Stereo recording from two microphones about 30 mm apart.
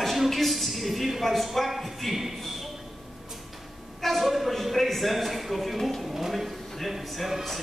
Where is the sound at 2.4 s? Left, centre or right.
Centre.